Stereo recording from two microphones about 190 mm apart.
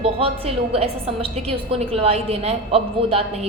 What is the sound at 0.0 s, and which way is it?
A woman's voice, 30° right (ahead or behind).